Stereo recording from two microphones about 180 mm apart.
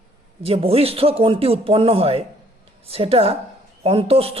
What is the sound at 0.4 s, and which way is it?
Speech, 30° right (ahead or behind).